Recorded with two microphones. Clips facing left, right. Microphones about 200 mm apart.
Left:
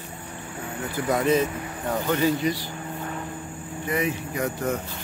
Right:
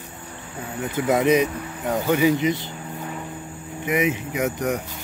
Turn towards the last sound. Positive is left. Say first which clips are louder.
# right 3 dB
turn(degrees=-20)  # may be behind; listen again after turning